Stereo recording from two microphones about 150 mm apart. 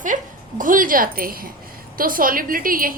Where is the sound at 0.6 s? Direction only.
65° right (ahead or behind).